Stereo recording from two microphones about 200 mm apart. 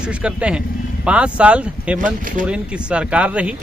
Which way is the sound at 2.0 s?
40° right (ahead or behind).